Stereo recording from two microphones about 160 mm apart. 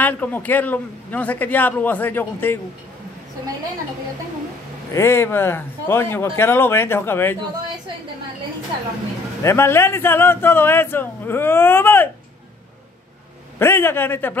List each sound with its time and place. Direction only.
0.0 s a man's voice: 10° left (ahead or behind)
4.9 s a man's voice: 15° left (ahead or behind)
9.4 s a man's voice: 15° left (ahead or behind)
13.6 s a man's voice: 15° left (ahead or behind)